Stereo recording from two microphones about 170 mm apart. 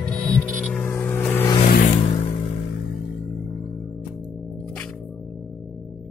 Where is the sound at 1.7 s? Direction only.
55° left (ahead or behind).